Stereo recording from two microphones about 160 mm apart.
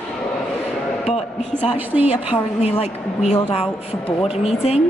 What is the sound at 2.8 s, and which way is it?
A woman's voice, 40° left (ahead or behind).